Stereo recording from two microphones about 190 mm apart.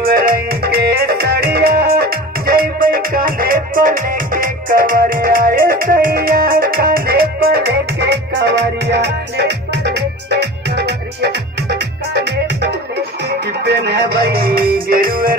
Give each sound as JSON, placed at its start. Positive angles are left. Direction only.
{"t": 0.0, "sound": "music", "side_deg": -50}
{"t": 13.7, "sound": "music", "side_deg": -60}